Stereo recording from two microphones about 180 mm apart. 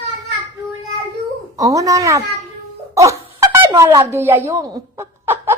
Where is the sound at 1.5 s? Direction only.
20° right (ahead or behind).